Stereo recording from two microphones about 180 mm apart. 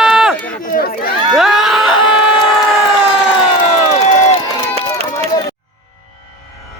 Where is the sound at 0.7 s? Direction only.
55° left (ahead or behind).